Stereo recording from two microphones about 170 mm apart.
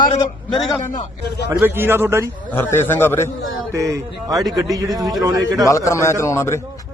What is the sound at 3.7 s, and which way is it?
A man's voice, 20° right (ahead or behind).